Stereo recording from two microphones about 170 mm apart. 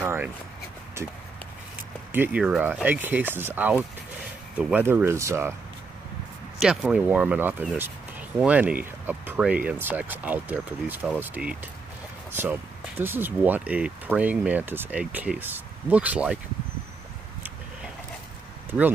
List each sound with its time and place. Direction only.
0.0 s a sound: 15° right (ahead or behind)
2.1 s speech: 10° right (ahead or behind)
6.6 s speech: 5° right (ahead or behind)